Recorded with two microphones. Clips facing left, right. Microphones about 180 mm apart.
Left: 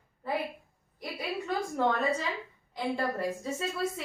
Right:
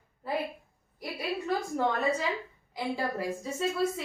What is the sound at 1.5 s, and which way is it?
A woman's voice, centre (ahead or behind).